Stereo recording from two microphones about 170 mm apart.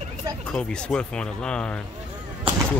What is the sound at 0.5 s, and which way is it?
Speech, 5° left (ahead or behind).